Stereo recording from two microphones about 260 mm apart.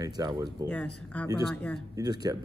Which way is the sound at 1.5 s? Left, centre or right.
Centre.